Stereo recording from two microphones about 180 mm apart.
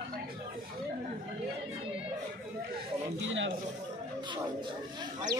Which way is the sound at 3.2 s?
90° right.